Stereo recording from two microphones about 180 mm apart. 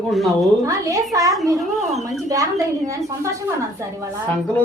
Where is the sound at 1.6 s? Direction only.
Centre (ahead or behind).